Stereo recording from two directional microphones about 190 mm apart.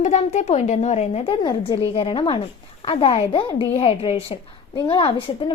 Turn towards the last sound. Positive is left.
turn(degrees=25)  # may be behind; listen again after turning